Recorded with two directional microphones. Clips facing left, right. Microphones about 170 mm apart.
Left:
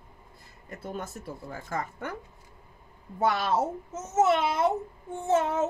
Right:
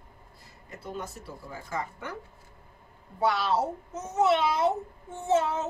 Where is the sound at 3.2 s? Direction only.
50° left (ahead or behind).